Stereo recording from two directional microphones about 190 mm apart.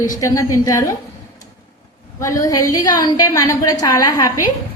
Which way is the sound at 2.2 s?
20° left (ahead or behind).